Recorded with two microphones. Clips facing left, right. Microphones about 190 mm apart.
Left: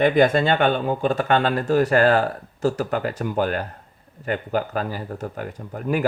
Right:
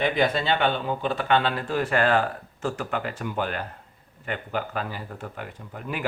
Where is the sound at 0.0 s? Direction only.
50° left (ahead or behind).